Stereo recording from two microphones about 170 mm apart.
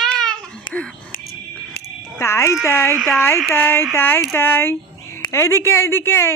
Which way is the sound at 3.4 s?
10° left (ahead or behind).